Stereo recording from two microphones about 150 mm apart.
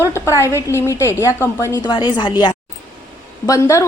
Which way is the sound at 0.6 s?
20° left (ahead or behind).